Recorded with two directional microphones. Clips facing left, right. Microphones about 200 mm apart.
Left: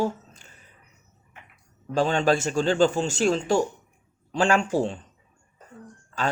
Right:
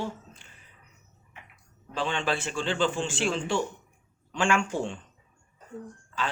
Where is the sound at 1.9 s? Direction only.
40° left (ahead or behind).